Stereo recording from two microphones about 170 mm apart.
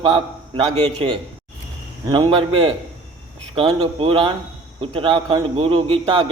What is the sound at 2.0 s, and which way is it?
A man's voice, 30° right (ahead or behind).